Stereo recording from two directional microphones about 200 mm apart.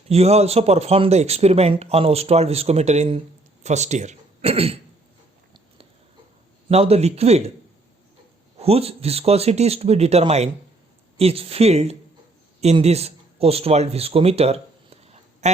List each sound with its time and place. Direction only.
0.1 s speech: 30° right (ahead or behind)
6.7 s speech: 30° right (ahead or behind)
8.5 s a man's voice: 30° right (ahead or behind)